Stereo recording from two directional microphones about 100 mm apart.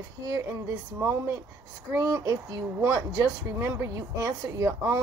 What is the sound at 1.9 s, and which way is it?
Speech, 35° right (ahead or behind).